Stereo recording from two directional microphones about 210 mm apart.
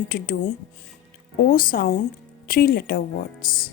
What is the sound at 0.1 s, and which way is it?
Speech, 40° left (ahead or behind).